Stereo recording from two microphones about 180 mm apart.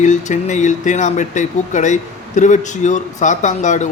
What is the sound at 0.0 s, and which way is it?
A man's voice, 40° left (ahead or behind).